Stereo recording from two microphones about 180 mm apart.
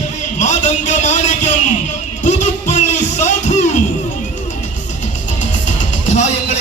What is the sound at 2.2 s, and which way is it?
Music, 40° left (ahead or behind).